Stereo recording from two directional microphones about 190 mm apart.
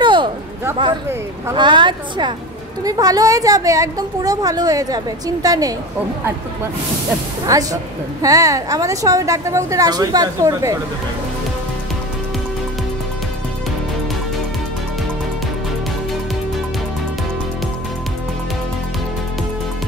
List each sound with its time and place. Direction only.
0.0 s a sound: 25° right (ahead or behind)
1.5 s a woman's voice: 25° right (ahead or behind)
7.4 s a woman's voice: 20° right (ahead or behind)